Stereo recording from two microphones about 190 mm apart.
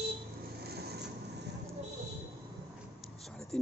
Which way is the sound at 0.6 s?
60° right (ahead or behind).